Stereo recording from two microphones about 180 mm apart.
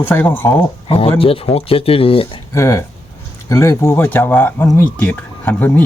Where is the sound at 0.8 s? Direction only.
30° left (ahead or behind).